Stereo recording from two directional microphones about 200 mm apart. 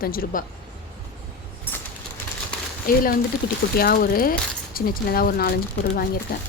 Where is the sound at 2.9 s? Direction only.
45° left (ahead or behind).